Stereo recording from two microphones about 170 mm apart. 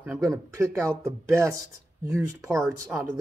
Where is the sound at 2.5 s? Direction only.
Centre (ahead or behind).